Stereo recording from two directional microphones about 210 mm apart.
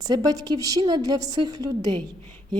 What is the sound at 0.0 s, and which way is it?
A woman's voice, 20° right (ahead or behind).